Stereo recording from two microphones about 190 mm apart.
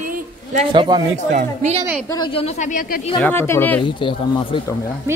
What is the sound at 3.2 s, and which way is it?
Speech, 10° left (ahead or behind).